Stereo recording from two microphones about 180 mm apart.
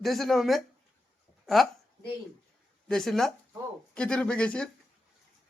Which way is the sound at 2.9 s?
Centre (ahead or behind).